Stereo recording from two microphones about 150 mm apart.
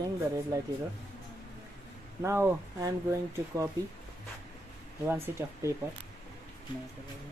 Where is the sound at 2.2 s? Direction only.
15° right (ahead or behind).